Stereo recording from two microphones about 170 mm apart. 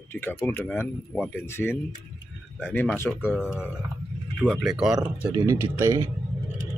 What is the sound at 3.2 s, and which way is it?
Speech, 5° right (ahead or behind).